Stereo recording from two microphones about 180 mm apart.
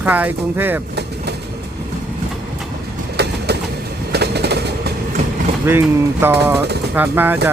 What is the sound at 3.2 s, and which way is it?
Train, 65° right (ahead or behind).